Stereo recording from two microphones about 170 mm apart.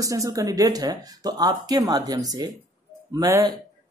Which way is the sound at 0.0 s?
20° right (ahead or behind).